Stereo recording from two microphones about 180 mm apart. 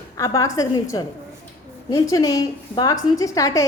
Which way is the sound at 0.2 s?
15° left (ahead or behind).